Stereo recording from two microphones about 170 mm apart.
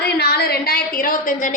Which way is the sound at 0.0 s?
70° left (ahead or behind).